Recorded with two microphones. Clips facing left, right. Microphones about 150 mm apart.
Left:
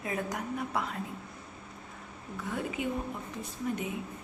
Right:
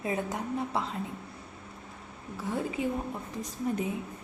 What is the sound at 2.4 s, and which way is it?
Speech, 30° right (ahead or behind).